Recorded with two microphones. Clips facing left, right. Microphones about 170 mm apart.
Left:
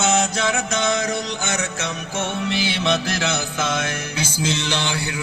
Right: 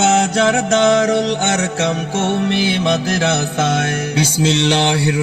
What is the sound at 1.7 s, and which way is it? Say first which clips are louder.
Music: right 8 dB; 80° right.